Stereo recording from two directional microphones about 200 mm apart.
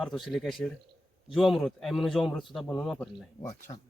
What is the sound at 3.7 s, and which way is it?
Speech, 20° left (ahead or behind).